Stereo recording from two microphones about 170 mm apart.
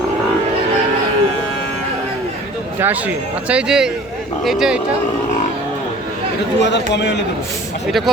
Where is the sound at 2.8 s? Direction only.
10° right (ahead or behind).